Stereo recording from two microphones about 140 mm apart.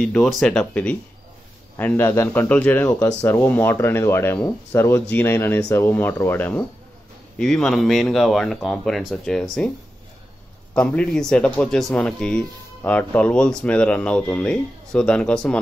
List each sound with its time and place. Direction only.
0.0 s speech: 5° left (ahead or behind)
10.7 s speech: 5° left (ahead or behind)